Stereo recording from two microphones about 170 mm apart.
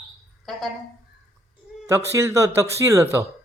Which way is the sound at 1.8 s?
15° right (ahead or behind).